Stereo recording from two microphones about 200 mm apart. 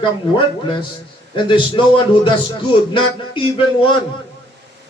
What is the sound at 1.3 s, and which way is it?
A man's voice, 25° left (ahead or behind).